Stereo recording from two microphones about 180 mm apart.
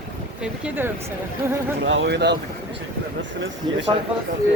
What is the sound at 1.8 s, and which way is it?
Speech, 90° right.